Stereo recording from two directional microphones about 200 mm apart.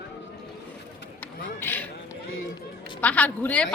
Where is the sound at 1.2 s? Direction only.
10° left (ahead or behind).